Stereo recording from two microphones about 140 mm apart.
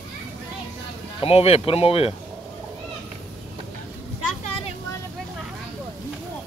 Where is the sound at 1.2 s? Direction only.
45° left (ahead or behind).